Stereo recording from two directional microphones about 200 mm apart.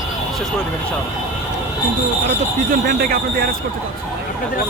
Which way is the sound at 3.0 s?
45° right (ahead or behind).